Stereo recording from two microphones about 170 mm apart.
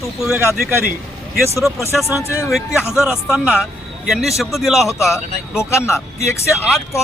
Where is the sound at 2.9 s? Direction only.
5° right (ahead or behind).